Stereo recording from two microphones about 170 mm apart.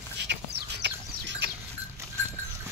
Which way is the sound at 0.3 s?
85° right.